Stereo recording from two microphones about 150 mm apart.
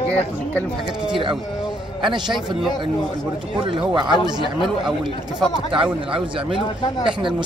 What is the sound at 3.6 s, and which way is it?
Speech, 35° right (ahead or behind).